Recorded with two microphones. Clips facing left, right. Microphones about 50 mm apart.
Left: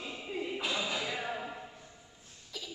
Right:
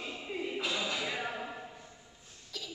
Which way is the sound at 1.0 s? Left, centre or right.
Centre.